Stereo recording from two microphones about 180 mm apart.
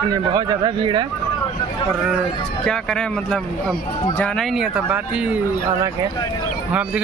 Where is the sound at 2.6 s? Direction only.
5° left (ahead or behind).